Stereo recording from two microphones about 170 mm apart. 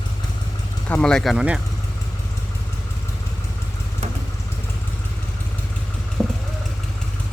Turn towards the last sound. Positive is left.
turn(degrees=-20)  # may be behind; listen again after turning